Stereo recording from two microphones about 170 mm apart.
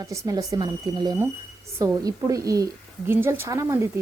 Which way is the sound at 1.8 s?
20° right (ahead or behind).